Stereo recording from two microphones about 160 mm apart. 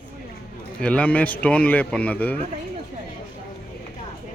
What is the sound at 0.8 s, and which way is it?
A man's voice, 10° left (ahead or behind).